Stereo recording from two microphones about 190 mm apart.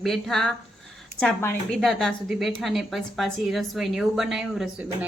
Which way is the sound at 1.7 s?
Centre (ahead or behind).